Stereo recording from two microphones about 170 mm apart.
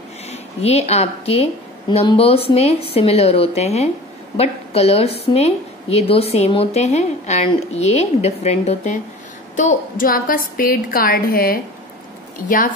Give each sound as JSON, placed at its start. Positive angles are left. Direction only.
{"t": 0.3, "sound": "a woman's voice", "side_deg": 40}
{"t": 9.6, "sound": "a woman's voice", "side_deg": 50}